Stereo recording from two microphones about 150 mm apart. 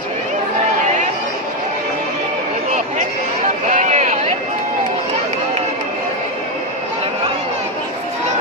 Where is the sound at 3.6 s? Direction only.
55° right (ahead or behind).